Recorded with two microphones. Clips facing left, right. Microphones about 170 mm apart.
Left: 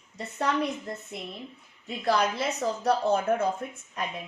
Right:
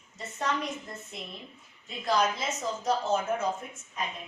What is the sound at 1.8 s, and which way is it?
A woman's voice, 60° left (ahead or behind).